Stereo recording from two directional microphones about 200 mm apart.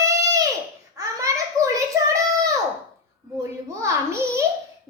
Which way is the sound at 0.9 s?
15° right (ahead or behind).